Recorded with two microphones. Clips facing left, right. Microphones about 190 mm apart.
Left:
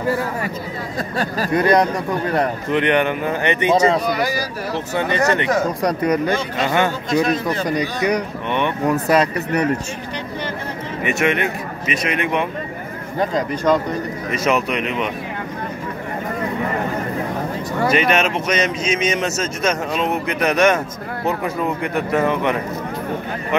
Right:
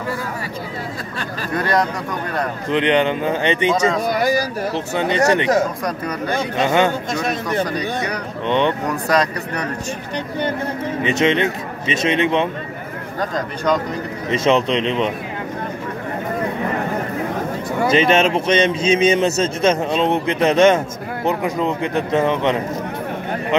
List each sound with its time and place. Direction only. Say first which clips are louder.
1.7 s speech: left 2 dB; 20° left (ahead or behind)
2.7 s a man's voice: right 2 dB; 20° right (ahead or behind)
4.9 s a man's voice: right 2 dB; 20° right (ahead or behind)
6.6 s speech: right 3 dB; 20° right (ahead or behind)
7.4 s speech: even; 10° left (ahead or behind)
8.5 s a man's voice: right 5 dB; 20° right (ahead or behind)
8.8 s speech: left 2 dB; 5° left (ahead or behind)
11.1 s a man's voice: right 2 dB; 20° right (ahead or behind)
14.3 s a man's voice: right 4 dB; 25° right (ahead or behind)
17.8 s a man's voice: right 3 dB; 25° right (ahead or behind)